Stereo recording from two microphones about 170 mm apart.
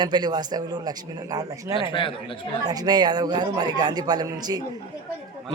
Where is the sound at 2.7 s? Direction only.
25° right (ahead or behind).